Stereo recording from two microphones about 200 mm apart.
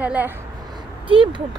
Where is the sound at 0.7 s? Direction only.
25° right (ahead or behind).